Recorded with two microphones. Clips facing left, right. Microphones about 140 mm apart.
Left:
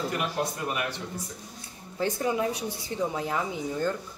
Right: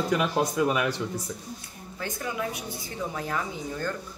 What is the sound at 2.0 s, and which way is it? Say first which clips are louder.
Speech: left 5 dB; 30° left (ahead or behind).